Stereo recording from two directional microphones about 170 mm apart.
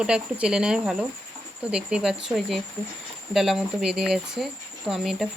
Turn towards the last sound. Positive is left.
turn(degrees=0)  # may be behind; listen again after turning